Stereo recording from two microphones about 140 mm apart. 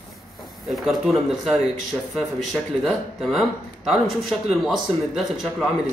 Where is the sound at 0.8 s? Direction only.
Centre (ahead or behind).